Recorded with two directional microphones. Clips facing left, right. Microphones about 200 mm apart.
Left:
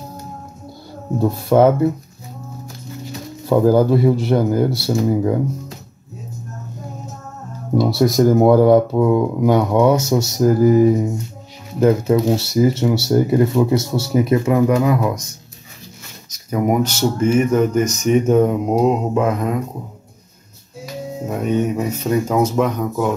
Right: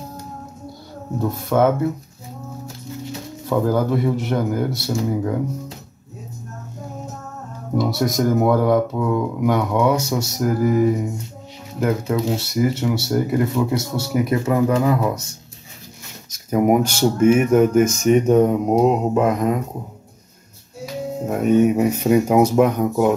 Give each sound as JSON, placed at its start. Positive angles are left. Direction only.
{"t": 1.2, "sound": "speech", "side_deg": 30}
{"t": 3.4, "sound": "speech", "side_deg": 30}
{"t": 7.7, "sound": "speech", "side_deg": 30}
{"t": 16.4, "sound": "speech", "side_deg": -5}
{"t": 18.0, "sound": "mantra", "side_deg": 0}
{"t": 21.3, "sound": "speech", "side_deg": -5}